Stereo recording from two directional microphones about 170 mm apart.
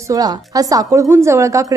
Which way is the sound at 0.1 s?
20° right (ahead or behind).